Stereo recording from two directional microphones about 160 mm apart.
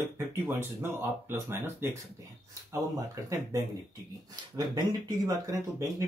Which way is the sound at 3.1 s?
20° right (ahead or behind).